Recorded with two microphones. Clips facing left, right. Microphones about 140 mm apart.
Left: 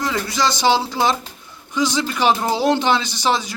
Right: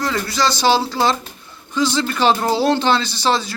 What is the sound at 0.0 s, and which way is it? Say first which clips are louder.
A man's voice: right 1 dB; 20° left (ahead or behind).